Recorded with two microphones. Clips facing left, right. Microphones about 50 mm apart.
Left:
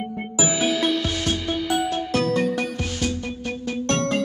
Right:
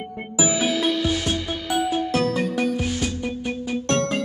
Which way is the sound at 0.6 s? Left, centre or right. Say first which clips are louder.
Left 2 dB; centre.